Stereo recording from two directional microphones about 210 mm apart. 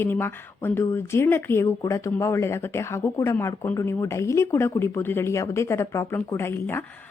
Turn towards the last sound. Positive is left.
turn(degrees=10)  # may be behind; listen again after turning